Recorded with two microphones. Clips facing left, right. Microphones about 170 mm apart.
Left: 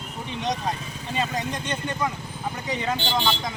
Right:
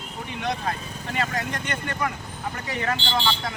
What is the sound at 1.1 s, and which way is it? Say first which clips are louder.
Speech: left 1 dB; 15° left (ahead or behind).